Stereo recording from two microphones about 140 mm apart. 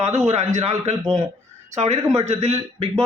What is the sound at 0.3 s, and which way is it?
A man's voice, 55° right (ahead or behind).